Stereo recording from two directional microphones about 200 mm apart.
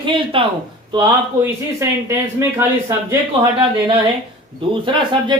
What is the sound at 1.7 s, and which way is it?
Speech, 15° right (ahead or behind).